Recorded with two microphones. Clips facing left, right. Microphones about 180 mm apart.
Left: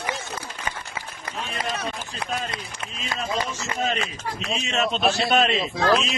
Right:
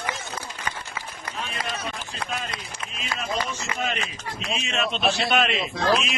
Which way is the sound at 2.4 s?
35° left (ahead or behind).